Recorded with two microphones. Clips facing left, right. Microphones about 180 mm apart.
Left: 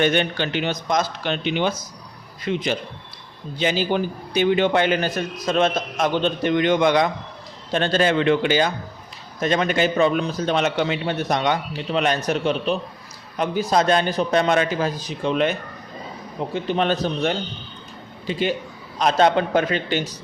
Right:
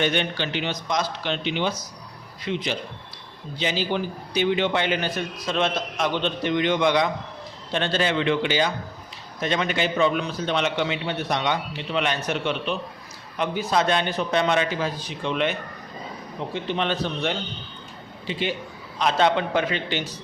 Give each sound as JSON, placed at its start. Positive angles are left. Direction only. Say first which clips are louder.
{"t": 0.0, "sound": "a man's voice", "louder": "left 4 dB", "side_deg": 45}
{"t": 16.6, "sound": "a man's voice", "louder": "left 4 dB", "side_deg": 40}